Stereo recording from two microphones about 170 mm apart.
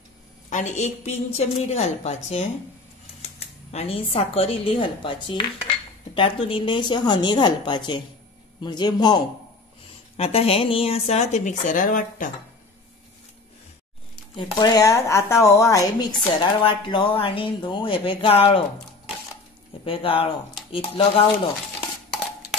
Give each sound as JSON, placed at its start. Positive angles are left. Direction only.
{"t": 0.5, "sound": "speech", "side_deg": 45}
{"t": 10.1, "sound": "speech", "side_deg": 35}
{"t": 14.3, "sound": "speech", "side_deg": 20}
{"t": 19.8, "sound": "speech", "side_deg": 30}